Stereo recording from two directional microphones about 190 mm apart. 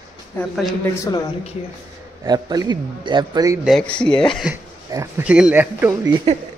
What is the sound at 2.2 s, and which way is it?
A man's voice, 20° right (ahead or behind).